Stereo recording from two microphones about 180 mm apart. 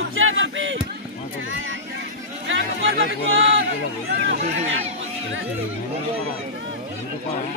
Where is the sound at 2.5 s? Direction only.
90° right.